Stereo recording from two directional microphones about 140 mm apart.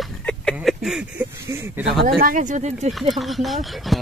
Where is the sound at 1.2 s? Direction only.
15° right (ahead or behind).